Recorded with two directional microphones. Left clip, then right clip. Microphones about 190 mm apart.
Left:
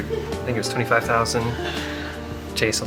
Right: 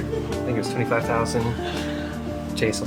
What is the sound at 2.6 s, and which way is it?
Speech, 15° right (ahead or behind).